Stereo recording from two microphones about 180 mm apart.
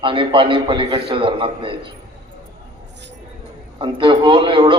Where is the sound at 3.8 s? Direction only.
25° right (ahead or behind).